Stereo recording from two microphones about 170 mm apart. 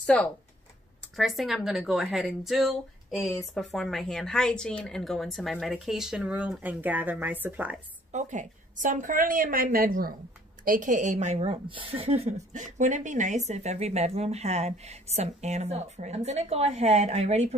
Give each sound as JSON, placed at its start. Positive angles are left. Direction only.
{"t": 0.0, "sound": "speech", "side_deg": 5}
{"t": 8.1, "sound": "a woman's voice", "side_deg": -45}